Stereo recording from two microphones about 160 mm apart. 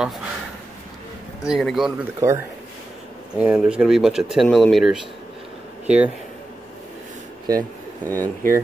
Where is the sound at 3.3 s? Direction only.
5° right (ahead or behind).